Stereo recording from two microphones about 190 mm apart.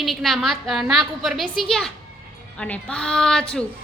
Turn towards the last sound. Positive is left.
turn(degrees=5)  # may be behind; listen again after turning